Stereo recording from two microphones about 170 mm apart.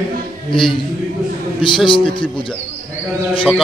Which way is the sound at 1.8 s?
30° left (ahead or behind).